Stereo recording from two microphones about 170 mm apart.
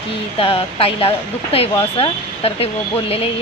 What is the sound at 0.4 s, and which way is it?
Speech, 35° left (ahead or behind).